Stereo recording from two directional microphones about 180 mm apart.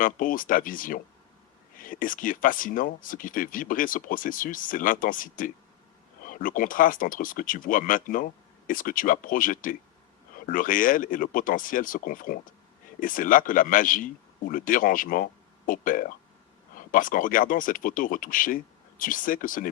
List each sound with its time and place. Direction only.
0.0 s speech: 50° left (ahead or behind)